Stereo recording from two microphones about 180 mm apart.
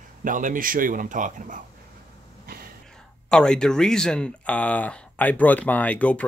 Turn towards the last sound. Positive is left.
turn(degrees=5)  # may be behind; listen again after turning